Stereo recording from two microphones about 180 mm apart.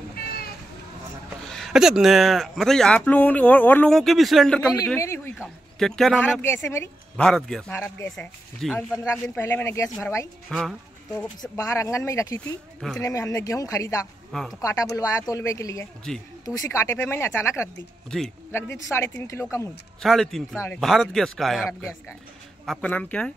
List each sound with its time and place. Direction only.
1.5 s speech: centre (ahead or behind)
5.0 s speech: 15° left (ahead or behind)
5.4 s speech: centre (ahead or behind)
8.5 s speech: centre (ahead or behind)
9.1 s speech: 15° left (ahead or behind)
11.5 s speech: 15° left (ahead or behind)
12.4 s speech: 5° left (ahead or behind)
13.0 s speech: 20° left (ahead or behind)
14.3 s speech: centre (ahead or behind)
14.6 s speech: 20° left (ahead or behind)
20.0 s speech: centre (ahead or behind)
20.5 s speech: 15° left (ahead or behind)
20.8 s speech: centre (ahead or behind)
22.7 s speech: 10° left (ahead or behind)